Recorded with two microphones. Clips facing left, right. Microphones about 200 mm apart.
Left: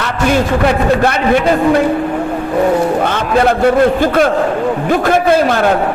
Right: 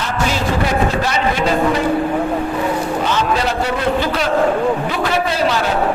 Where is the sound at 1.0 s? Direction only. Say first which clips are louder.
Left 6 dB; 55° left (ahead or behind).